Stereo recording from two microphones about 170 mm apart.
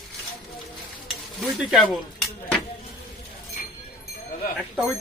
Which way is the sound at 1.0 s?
Centre (ahead or behind).